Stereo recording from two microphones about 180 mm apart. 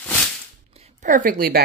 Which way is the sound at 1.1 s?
50° right (ahead or behind).